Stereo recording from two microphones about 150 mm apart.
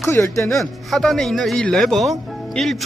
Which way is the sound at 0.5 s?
Centre (ahead or behind).